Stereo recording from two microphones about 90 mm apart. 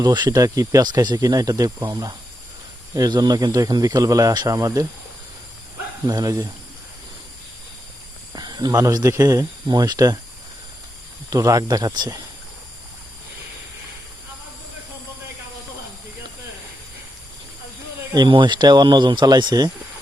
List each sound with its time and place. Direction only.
0.0 s speech: 55° right (ahead or behind)
0.3 s speech: 40° right (ahead or behind)
6.1 s speech: 45° right (ahead or behind)
8.3 s speech: 50° right (ahead or behind)
11.3 s speech: 40° right (ahead or behind)
18.1 s speech: 60° right (ahead or behind)